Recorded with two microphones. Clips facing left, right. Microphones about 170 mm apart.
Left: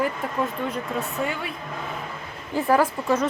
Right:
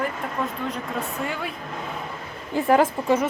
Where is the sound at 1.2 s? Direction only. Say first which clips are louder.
Left 1 dB; centre (ahead or behind).